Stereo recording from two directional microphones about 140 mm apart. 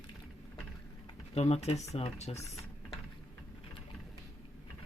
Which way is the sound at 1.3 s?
50° left (ahead or behind).